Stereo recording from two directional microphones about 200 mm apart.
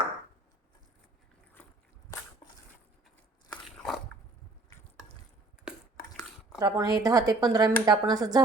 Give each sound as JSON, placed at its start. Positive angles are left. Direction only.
{"t": 3.5, "sound": "biting", "side_deg": 0}
{"t": 6.6, "sound": "speech", "side_deg": -20}